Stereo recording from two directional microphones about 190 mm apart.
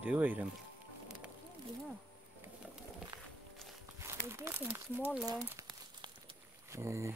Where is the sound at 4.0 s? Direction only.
15° right (ahead or behind).